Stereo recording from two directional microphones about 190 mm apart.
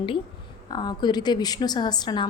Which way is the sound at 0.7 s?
20° left (ahead or behind).